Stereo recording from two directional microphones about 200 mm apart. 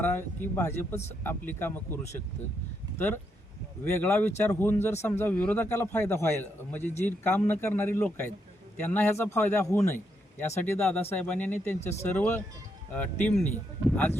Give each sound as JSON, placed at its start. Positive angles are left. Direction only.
{"t": 0.0, "sound": "a man's voice", "side_deg": 10}
{"t": 3.8, "sound": "a man's voice", "side_deg": 10}
{"t": 11.8, "sound": "speech", "side_deg": 35}
{"t": 12.0, "sound": "a man's voice", "side_deg": 10}